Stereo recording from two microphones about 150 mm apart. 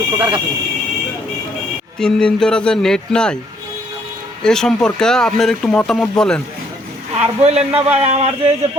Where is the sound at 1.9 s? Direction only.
5° left (ahead or behind).